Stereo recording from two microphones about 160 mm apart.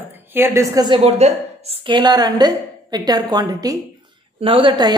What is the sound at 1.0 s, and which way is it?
A woman's voice, 40° right (ahead or behind).